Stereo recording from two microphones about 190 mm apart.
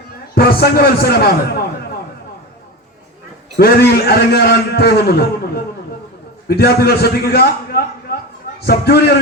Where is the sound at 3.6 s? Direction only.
55° left (ahead or behind).